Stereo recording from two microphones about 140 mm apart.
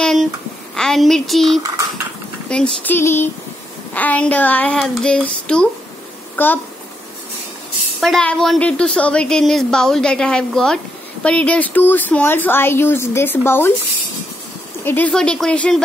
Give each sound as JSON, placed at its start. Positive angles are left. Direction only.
{"t": 0.0, "sound": "a sound", "side_deg": 0}
{"t": 0.7, "sound": "a woman's voice", "side_deg": 0}
{"t": 8.0, "sound": "a woman's voice", "side_deg": 5}
{"t": 14.9, "sound": "a woman's voice", "side_deg": 10}